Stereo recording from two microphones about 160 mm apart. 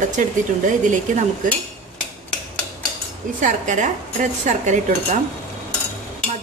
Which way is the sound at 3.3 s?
50° right (ahead or behind).